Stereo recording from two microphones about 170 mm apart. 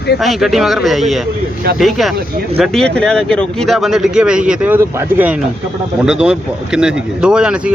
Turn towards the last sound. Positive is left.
turn(degrees=-5)  # may be behind; listen again after turning